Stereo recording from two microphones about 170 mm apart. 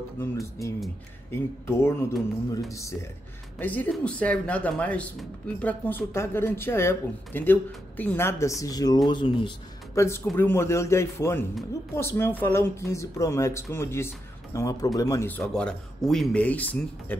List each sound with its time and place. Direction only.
0.2 s speech: 15° left (ahead or behind)
9.9 s speech: 15° left (ahead or behind)